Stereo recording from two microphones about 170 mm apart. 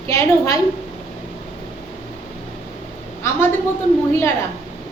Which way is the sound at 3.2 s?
15° left (ahead or behind).